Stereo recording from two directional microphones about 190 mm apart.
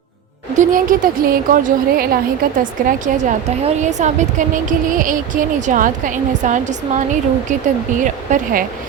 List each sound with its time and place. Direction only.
0.5 s a woman's voice: 45° right (ahead or behind)